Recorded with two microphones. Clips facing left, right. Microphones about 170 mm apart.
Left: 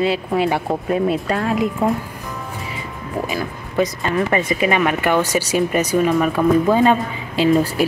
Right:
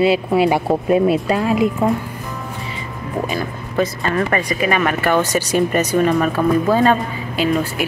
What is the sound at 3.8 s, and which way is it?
Speech, 15° left (ahead or behind).